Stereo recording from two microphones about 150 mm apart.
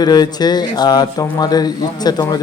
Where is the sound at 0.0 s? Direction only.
25° left (ahead or behind).